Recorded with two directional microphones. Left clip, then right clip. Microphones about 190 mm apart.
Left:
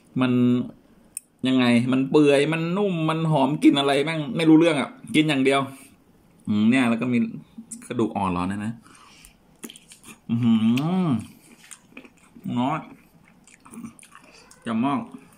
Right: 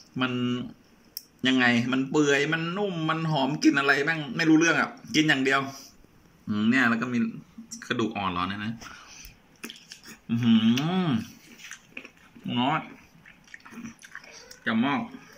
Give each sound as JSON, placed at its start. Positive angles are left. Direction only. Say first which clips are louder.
{"t": 0.1, "sound": "speech", "louder": "left 7 dB", "side_deg": 25}
{"t": 7.8, "sound": "speech", "louder": "left 3 dB", "side_deg": 30}
{"t": 9.6, "sound": "a sound", "louder": "right 1 dB", "side_deg": 25}
{"t": 10.9, "sound": "speech", "louder": "left 2 dB", "side_deg": 25}
{"t": 12.4, "sound": "speech", "louder": "even", "side_deg": 15}
{"t": 14.6, "sound": "speech", "louder": "left 1 dB", "side_deg": 20}